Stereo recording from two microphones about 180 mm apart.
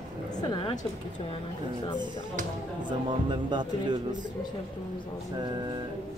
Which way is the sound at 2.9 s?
25° right (ahead or behind).